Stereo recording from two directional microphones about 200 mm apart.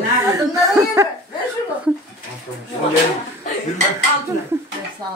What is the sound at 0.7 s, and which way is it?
Speech, 15° right (ahead or behind).